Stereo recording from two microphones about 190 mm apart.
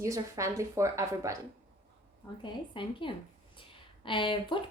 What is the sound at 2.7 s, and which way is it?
Speech, 25° left (ahead or behind).